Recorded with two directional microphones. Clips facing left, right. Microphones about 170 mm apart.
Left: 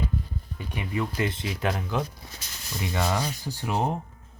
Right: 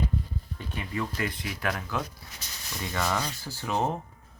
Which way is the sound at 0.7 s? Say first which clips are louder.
Left 3 dB; 20° left (ahead or behind).